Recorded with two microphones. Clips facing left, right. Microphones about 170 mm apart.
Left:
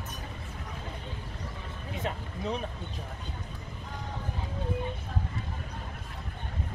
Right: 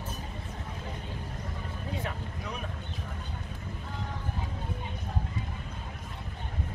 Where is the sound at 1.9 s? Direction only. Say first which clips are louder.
Left 4 dB; 25° left (ahead or behind).